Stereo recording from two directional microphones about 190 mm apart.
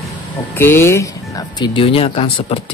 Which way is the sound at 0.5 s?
10° left (ahead or behind).